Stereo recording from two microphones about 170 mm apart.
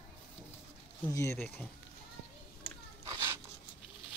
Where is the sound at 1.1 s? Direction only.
15° left (ahead or behind).